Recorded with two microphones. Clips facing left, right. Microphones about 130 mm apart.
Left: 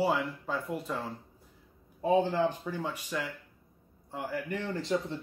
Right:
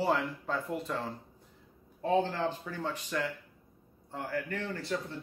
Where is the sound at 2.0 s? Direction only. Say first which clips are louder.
Left 3 dB; 10° left (ahead or behind).